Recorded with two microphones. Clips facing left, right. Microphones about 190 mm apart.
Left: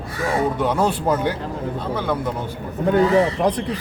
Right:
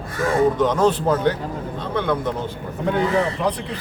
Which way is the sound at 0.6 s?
10° left (ahead or behind).